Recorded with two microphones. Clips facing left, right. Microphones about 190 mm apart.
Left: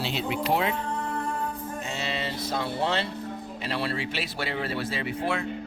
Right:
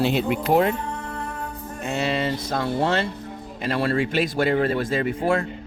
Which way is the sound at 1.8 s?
55° right (ahead or behind).